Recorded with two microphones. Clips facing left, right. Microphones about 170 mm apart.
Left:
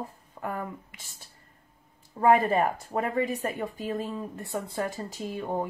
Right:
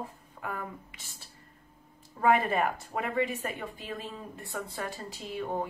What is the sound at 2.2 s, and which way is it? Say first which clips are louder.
Speech: left 4 dB; 40° left (ahead or behind).